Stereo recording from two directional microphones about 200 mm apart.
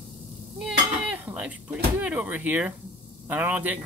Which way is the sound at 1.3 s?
5° right (ahead or behind).